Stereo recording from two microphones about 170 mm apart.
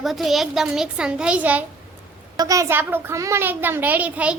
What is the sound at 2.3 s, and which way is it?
A woman's voice, 20° right (ahead or behind).